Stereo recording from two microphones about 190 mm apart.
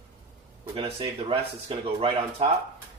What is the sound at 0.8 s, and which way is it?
Speech, 30° right (ahead or behind).